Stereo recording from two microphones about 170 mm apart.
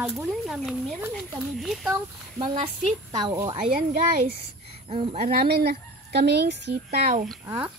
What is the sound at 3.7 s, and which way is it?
Speech, 65° right (ahead or behind).